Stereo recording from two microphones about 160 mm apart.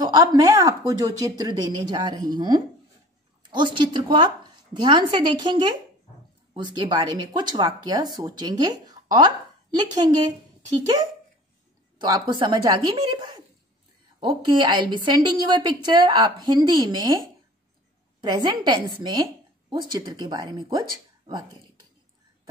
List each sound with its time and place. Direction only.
0.0 s a woman's voice: 25° right (ahead or behind)
12.0 s a woman's voice: 30° right (ahead or behind)
18.2 s a woman's voice: 25° right (ahead or behind)